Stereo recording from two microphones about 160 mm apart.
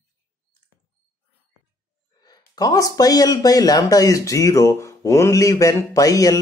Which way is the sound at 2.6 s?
20° left (ahead or behind).